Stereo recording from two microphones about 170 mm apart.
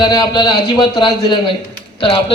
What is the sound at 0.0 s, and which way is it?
A man's voice, 25° left (ahead or behind).